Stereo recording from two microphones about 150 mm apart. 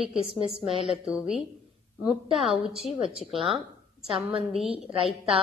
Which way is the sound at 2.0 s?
Centre (ahead or behind).